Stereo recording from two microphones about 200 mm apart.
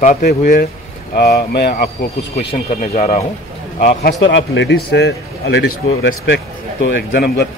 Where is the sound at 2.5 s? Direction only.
35° left (ahead or behind).